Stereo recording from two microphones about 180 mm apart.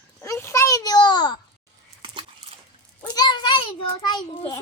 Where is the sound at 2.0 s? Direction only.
30° right (ahead or behind).